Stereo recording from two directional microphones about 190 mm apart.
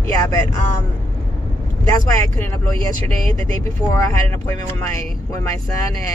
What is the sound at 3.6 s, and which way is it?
Speech, 15° left (ahead or behind).